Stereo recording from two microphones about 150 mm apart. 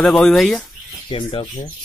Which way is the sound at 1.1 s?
35° left (ahead or behind).